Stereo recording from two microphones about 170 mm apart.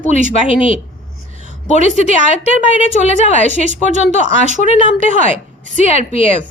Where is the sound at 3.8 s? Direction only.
45° right (ahead or behind).